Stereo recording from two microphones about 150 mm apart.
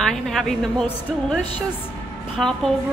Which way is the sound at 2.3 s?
5° left (ahead or behind).